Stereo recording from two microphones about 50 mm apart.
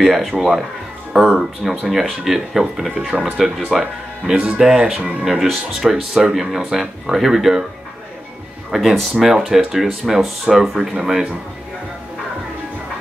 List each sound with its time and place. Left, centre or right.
0.0 s speech: centre
3.1 s speech: right
3.7 s speech: centre
8.7 s speech: centre